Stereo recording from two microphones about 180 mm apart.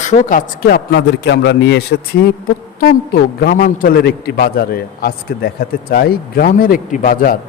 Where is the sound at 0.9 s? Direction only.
75° left (ahead or behind).